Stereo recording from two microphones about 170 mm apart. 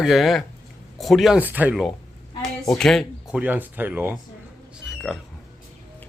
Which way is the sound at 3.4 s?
10° right (ahead or behind).